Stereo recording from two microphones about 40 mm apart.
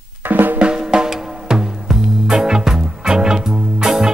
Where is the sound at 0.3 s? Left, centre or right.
Right.